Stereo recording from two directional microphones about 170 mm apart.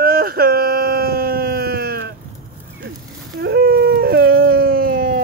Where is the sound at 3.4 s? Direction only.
65° right (ahead or behind).